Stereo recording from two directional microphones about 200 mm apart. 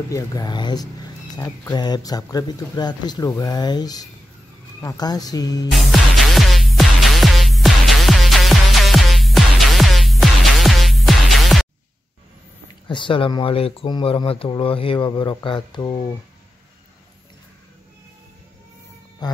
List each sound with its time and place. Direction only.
0.1 s speech: 15° left (ahead or behind)
5.7 s music: centre (ahead or behind)
12.8 s speech: 25° left (ahead or behind)
19.2 s speech: 20° left (ahead or behind)